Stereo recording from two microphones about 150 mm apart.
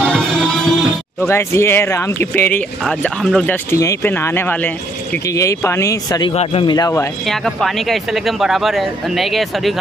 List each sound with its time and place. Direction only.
0.0 s music: centre (ahead or behind)
1.2 s speech: 15° left (ahead or behind)
3.7 s speech: 20° left (ahead or behind)
5.3 s speech: 20° left (ahead or behind)
6.3 s speech: 40° left (ahead or behind)
7.2 s speech: centre (ahead or behind)